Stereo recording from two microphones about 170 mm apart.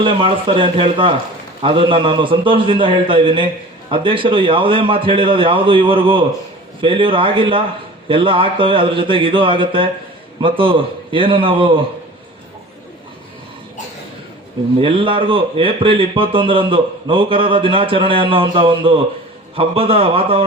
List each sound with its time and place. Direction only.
0.0 s a man's voice: 30° right (ahead or behind)
14.8 s a man's voice: 30° right (ahead or behind)